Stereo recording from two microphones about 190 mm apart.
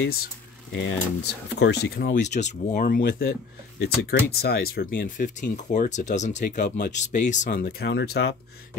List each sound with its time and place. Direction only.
0.2 s speech: 70° left (ahead or behind); by 3.3 s 50° left (ahead or behind)
4.0 s speech: 65° left (ahead or behind)